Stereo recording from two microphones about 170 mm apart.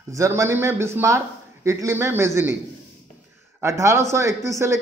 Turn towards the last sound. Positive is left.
turn(degrees=-15)  # may be behind; listen again after turning